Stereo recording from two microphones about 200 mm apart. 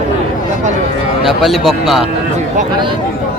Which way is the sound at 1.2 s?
Centre (ahead or behind).